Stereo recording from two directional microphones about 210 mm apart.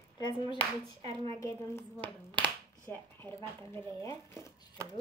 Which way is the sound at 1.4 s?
15° left (ahead or behind).